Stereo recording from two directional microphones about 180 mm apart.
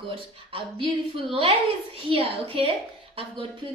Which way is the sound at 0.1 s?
30° right (ahead or behind).